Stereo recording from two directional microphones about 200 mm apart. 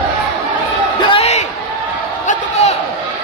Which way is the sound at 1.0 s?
30° left (ahead or behind).